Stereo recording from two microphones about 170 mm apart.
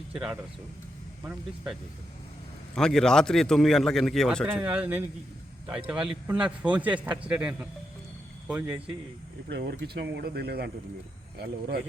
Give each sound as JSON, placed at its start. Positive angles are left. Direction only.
{"t": 0.1, "sound": "speech", "side_deg": -5}
{"t": 2.7, "sound": "a man's voice", "side_deg": 5}
{"t": 4.4, "sound": "speech", "side_deg": -10}
{"t": 9.5, "sound": "speech", "side_deg": -70}